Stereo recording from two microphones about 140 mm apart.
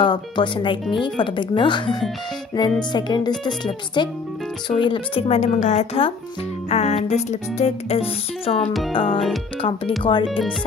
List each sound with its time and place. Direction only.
0.0 s speech: 35° left (ahead or behind)
5.3 s a woman's voice: 60° left (ahead or behind)
6.7 s music: 50° left (ahead or behind)
8.9 s speech: 40° left (ahead or behind)